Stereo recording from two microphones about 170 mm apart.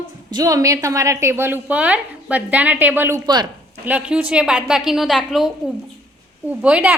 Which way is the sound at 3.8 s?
5° right (ahead or behind).